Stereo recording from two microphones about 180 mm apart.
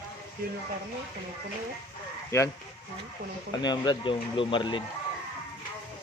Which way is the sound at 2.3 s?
15° left (ahead or behind).